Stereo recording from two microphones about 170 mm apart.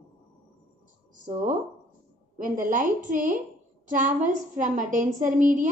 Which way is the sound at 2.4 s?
50° right (ahead or behind).